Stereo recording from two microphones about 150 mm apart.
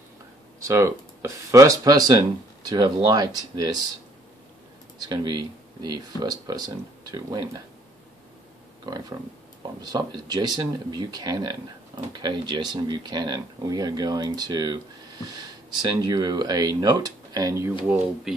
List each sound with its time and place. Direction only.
0.6 s speech: 20° right (ahead or behind)
5.0 s speech: 30° right (ahead or behind)
8.8 s speech: 25° right (ahead or behind)